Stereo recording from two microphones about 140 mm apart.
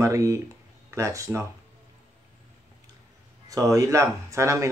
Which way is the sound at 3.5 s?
25° right (ahead or behind).